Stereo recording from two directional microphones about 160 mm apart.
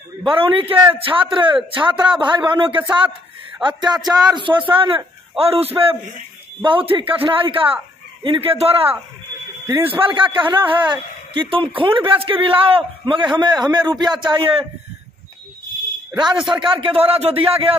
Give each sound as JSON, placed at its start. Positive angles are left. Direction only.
{"t": 0.2, "sound": "a man's voice", "side_deg": -35}
{"t": 6.7, "sound": "a man's voice", "side_deg": -35}
{"t": 16.4, "sound": "a man's voice", "side_deg": -30}